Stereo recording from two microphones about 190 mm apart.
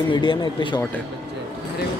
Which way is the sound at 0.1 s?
25° left (ahead or behind).